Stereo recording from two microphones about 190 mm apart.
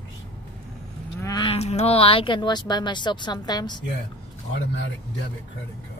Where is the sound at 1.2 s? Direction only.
20° left (ahead or behind).